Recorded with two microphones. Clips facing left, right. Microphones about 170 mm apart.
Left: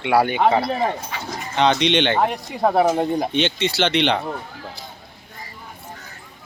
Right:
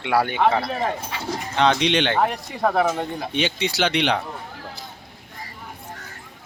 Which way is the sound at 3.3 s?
5° right (ahead or behind).